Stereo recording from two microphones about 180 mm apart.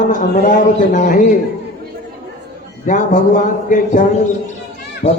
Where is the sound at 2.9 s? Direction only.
45° left (ahead or behind).